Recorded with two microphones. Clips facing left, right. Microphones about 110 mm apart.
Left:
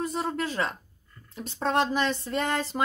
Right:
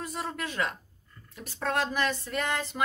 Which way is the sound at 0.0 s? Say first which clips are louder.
Left 6 dB; 25° left (ahead or behind).